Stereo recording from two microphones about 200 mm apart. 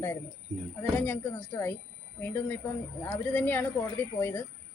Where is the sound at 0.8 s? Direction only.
10° left (ahead or behind).